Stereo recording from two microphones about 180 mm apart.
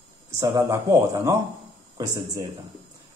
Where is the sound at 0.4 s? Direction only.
15° right (ahead or behind).